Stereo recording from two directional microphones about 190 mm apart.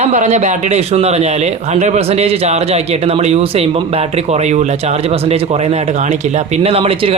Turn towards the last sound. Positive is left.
turn(degrees=-30)  # may be behind; listen again after turning